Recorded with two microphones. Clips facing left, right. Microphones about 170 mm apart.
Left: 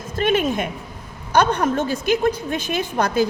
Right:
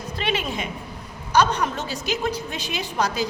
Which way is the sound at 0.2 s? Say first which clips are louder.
Left 8 dB; 50° left (ahead or behind).